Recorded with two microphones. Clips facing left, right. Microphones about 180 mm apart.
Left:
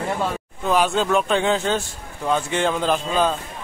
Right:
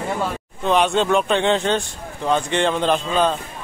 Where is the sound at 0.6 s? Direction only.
Centre (ahead or behind).